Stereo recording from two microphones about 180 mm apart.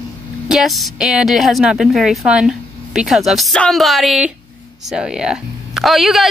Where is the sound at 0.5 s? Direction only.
Centre (ahead or behind).